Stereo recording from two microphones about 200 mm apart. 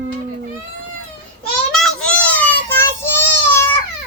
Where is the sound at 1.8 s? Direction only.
5° left (ahead or behind).